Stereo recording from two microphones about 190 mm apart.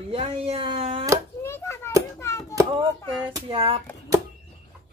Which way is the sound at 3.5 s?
30° right (ahead or behind).